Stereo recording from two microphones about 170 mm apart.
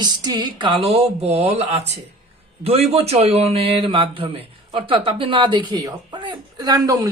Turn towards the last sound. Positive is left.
turn(degrees=-20)  # may be behind; listen again after turning